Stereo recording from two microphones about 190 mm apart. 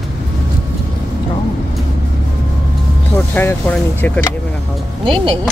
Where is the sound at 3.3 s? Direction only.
10° left (ahead or behind).